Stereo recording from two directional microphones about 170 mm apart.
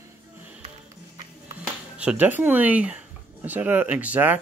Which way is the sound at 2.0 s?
10° right (ahead or behind).